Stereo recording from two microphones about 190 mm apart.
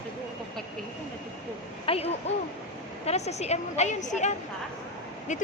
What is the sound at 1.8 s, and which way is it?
A woman's voice, 30° left (ahead or behind).